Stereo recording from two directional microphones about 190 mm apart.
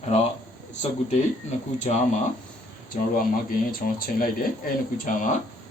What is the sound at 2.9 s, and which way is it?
Speech, 50° left (ahead or behind).